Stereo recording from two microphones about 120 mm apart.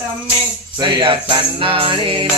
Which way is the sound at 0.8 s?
45° right (ahead or behind).